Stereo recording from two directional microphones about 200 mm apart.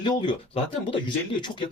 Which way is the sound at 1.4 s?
25° left (ahead or behind).